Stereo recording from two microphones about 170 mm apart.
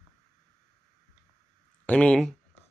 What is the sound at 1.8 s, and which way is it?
Speech, 5° left (ahead or behind).